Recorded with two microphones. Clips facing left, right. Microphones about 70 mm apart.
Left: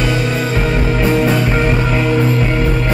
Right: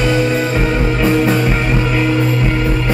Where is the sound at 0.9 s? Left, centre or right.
Centre.